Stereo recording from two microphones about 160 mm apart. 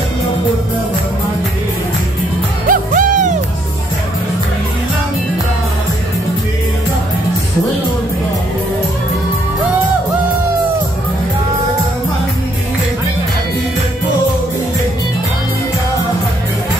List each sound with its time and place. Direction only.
2.7 s music: 55° right (ahead or behind)